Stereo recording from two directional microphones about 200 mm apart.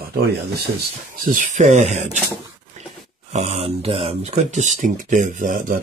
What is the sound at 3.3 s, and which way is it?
Speech, 35° right (ahead or behind).